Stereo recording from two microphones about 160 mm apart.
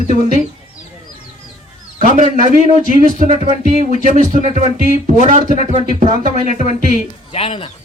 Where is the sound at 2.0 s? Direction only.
55° right (ahead or behind).